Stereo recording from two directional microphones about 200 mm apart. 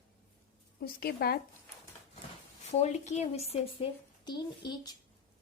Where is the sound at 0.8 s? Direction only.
50° left (ahead or behind).